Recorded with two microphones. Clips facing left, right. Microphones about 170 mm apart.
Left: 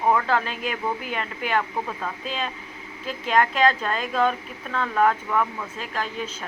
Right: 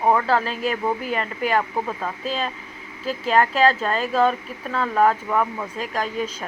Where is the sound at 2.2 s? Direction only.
40° right (ahead or behind).